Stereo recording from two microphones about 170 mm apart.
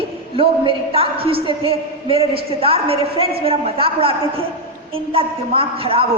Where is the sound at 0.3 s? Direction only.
30° right (ahead or behind).